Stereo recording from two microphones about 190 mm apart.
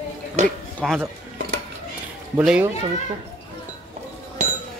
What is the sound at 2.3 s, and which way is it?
Speech, 10° right (ahead or behind).